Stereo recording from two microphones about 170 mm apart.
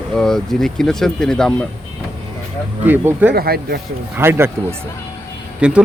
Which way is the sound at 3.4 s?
65° right (ahead or behind).